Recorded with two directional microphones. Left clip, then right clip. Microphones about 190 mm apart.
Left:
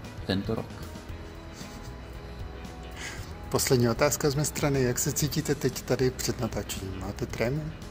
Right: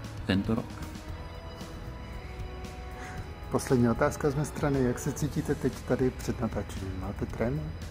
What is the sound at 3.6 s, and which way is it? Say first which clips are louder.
Speech: left 2 dB; 20° left (ahead or behind).